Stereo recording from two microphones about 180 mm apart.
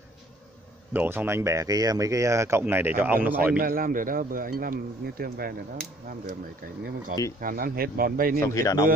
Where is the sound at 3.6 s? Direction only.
50° right (ahead or behind).